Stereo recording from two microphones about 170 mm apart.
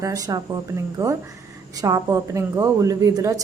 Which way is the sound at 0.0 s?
20° right (ahead or behind).